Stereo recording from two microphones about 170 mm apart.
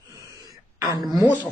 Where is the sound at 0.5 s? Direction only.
20° right (ahead or behind).